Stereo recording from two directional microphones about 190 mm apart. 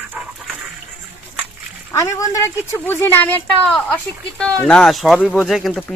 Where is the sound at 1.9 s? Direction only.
15° left (ahead or behind).